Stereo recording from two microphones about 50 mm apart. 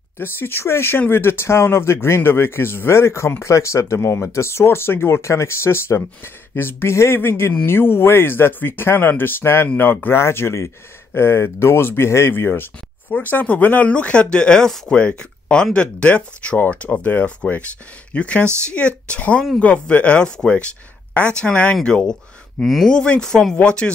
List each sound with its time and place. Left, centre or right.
0.2 s speech: left
13.1 s speech: left
13.8 s speech: left
21.8 s speech: centre
22.6 s speech: centre
22.8 s speech: centre